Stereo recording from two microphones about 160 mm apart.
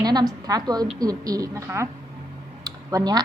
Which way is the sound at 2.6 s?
25° right (ahead or behind).